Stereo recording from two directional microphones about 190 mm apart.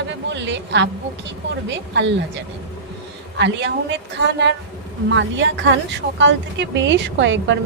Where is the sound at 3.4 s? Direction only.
70° right (ahead or behind).